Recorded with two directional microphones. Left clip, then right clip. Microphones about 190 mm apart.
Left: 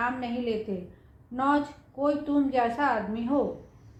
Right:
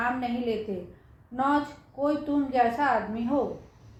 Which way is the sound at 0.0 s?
30° left (ahead or behind).